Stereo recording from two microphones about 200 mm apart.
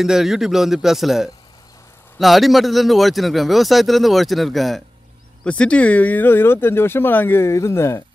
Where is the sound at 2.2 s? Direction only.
Centre (ahead or behind).